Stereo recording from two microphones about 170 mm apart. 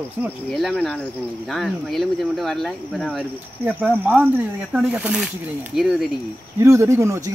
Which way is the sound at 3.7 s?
10° right (ahead or behind).